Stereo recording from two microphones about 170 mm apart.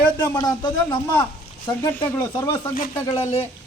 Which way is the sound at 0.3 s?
25° left (ahead or behind).